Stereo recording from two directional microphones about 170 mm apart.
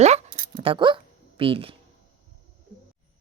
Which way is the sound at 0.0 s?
40° right (ahead or behind).